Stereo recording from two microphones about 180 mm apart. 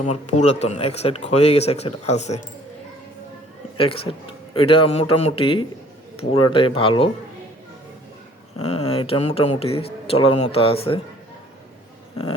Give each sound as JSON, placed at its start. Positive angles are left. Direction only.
{"t": 0.0, "sound": "speech", "side_deg": 40}
{"t": 3.8, "sound": "speech", "side_deg": 30}
{"t": 8.5, "sound": "speech", "side_deg": 35}